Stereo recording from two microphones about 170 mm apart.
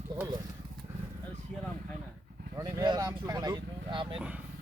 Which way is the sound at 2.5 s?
20° right (ahead or behind).